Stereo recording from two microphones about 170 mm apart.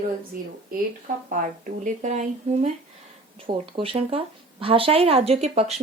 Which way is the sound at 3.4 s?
30° right (ahead or behind).